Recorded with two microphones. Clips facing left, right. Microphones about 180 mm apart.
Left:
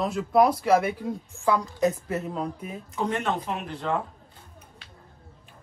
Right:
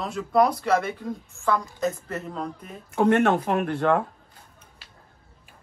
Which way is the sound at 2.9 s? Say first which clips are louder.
Right 8 dB; 60° right (ahead or behind).